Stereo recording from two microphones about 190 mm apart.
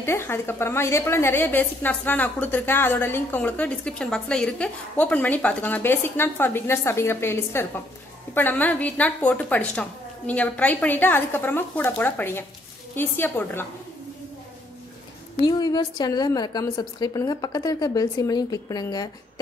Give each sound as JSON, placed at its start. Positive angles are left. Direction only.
{"t": 0.0, "sound": "a woman's voice", "side_deg": 15}
{"t": 15.4, "sound": "a woman's voice", "side_deg": 20}